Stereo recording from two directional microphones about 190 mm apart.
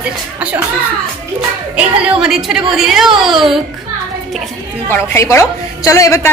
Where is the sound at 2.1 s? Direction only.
5° right (ahead or behind).